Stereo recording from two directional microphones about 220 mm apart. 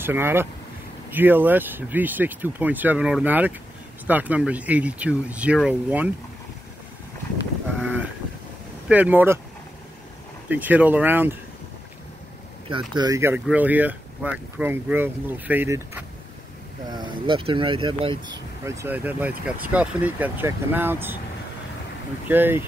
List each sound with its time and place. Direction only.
0.0 s speech: 10° right (ahead or behind)
7.8 s sheep: 5° right (ahead or behind)
8.8 s speech: 5° right (ahead or behind)
10.5 s speech: 5° right (ahead or behind)
12.6 s speech: 20° right (ahead or behind)
16.9 s speech: 20° right (ahead or behind)
22.3 s speech: 10° right (ahead or behind)